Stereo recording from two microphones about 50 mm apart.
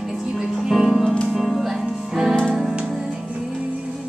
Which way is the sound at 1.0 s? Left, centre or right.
Centre.